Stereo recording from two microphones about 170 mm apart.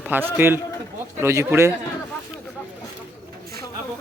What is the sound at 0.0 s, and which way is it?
A man's voice, 10° right (ahead or behind).